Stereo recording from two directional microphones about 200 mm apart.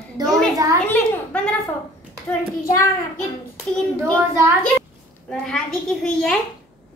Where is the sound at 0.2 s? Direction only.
20° right (ahead or behind).